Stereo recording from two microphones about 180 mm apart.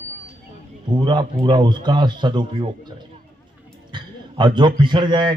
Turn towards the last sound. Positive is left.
turn(degrees=-25)  # may be behind; listen again after turning